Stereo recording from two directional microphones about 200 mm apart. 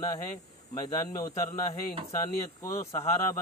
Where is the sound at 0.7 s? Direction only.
20° left (ahead or behind).